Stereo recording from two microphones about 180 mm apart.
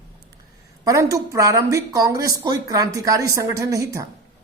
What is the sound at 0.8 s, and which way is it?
Speech, 20° right (ahead or behind).